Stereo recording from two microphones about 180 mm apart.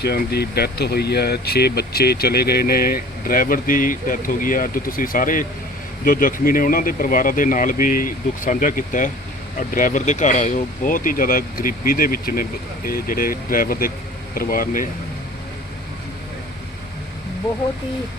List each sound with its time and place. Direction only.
0.0 s speech: 60° left (ahead or behind)